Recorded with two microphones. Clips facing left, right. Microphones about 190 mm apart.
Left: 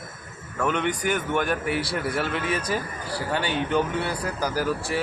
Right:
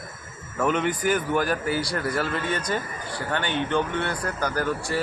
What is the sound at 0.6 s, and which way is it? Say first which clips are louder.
Speech: right 1 dB; 5° right (ahead or behind).